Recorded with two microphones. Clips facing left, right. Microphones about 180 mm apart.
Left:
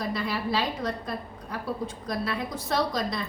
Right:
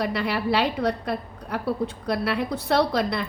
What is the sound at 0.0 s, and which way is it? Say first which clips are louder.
A woman's voice: right 4 dB; 70° right (ahead or behind).